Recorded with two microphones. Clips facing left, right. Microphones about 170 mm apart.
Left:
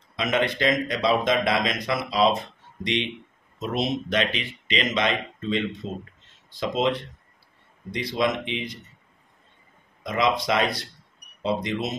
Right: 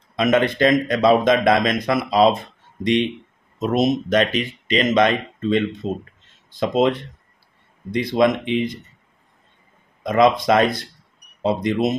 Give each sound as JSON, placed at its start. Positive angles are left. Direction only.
{"t": 0.1, "sound": "speech", "side_deg": -50}
{"t": 3.5, "sound": "speech", "side_deg": -50}
{"t": 10.0, "sound": "speech", "side_deg": -50}